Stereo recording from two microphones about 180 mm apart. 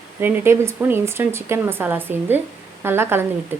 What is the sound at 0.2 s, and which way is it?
Speech, 10° right (ahead or behind).